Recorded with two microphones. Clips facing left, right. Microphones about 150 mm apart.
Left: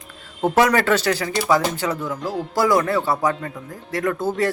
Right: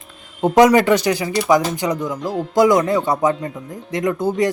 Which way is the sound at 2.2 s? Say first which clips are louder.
Right 2 dB; centre (ahead or behind).